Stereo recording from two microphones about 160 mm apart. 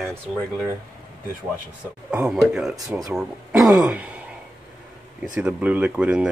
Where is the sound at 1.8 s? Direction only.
10° right (ahead or behind).